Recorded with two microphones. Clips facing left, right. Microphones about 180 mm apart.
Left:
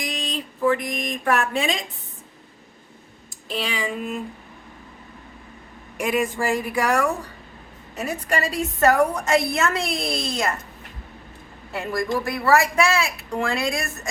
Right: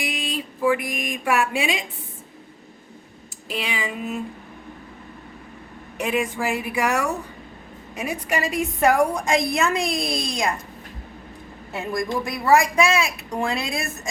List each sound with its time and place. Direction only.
0.0 s speech: 10° right (ahead or behind)
3.5 s a woman's voice: 10° right (ahead or behind)
6.0 s speech: 5° left (ahead or behind)
6.4 s a woman's voice: 10° right (ahead or behind)
11.9 s a woman's voice: 20° right (ahead or behind)